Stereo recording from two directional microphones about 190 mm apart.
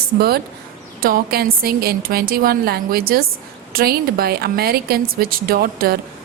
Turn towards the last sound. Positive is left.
turn(degrees=-50)  # may be behind; listen again after turning